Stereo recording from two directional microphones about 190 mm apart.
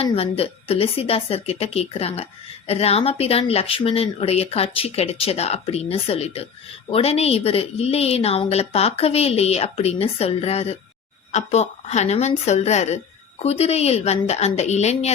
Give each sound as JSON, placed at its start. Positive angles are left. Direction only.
{"t": 0.0, "sound": "a woman's voice", "side_deg": 30}